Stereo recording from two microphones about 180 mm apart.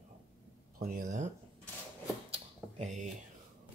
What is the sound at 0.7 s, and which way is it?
Speech, 50° right (ahead or behind).